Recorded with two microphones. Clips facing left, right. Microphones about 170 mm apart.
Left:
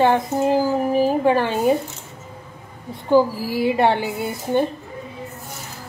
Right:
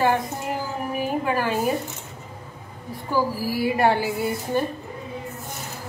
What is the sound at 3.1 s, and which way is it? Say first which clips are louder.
A woman's voice: left 7 dB; 25° left (ahead or behind).